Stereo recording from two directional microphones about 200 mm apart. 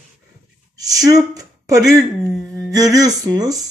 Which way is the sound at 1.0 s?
20° right (ahead or behind).